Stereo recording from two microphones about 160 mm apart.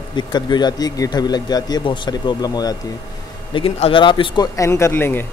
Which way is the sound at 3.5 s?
35° left (ahead or behind).